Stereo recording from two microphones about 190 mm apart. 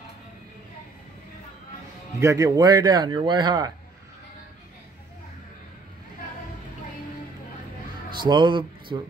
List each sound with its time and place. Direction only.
2.1 s speech: 15° right (ahead or behind)
8.2 s speech: 25° right (ahead or behind)